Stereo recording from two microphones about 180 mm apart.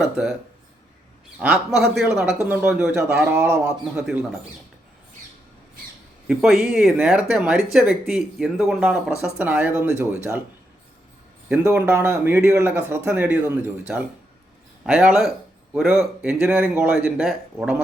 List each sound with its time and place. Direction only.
1.4 s speech: 5° right (ahead or behind)
6.2 s speech: centre (ahead or behind)
11.4 s speech: 10° right (ahead or behind)